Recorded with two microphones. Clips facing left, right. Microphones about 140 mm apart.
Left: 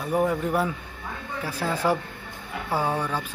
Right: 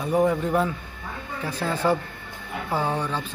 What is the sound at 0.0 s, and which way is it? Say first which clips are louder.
Speech: right 2 dB; 5° left (ahead or behind).